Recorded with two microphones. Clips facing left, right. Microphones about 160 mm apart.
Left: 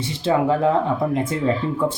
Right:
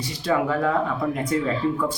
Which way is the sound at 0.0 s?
25° left (ahead or behind).